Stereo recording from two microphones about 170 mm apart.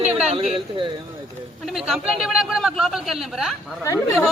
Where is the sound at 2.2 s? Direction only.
5° right (ahead or behind).